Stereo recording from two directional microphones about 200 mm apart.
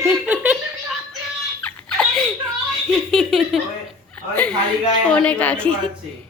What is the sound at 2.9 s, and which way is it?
A woman's voice, centre (ahead or behind).